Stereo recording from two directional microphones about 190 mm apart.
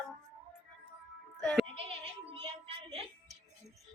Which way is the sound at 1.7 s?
30° right (ahead or behind).